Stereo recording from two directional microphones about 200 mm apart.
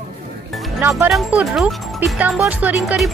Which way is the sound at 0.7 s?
10° right (ahead or behind).